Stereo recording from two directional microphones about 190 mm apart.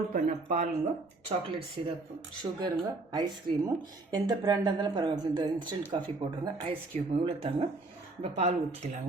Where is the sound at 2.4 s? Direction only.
25° right (ahead or behind).